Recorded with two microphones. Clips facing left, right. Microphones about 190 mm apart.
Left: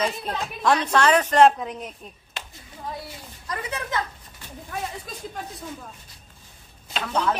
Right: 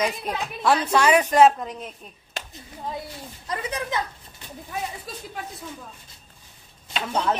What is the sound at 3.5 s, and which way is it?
Speech, 15° right (ahead or behind).